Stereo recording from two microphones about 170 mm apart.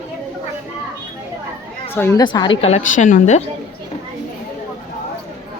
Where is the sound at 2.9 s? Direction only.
50° left (ahead or behind).